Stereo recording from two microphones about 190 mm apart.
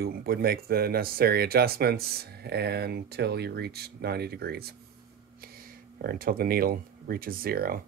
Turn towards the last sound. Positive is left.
turn(degrees=-50)  # may be behind; listen again after turning